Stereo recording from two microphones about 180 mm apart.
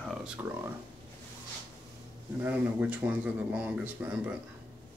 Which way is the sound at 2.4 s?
10° right (ahead or behind).